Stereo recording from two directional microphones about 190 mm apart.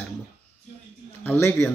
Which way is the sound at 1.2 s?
10° left (ahead or behind).